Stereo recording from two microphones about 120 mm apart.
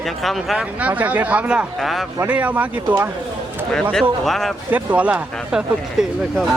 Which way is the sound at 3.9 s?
Centre (ahead or behind).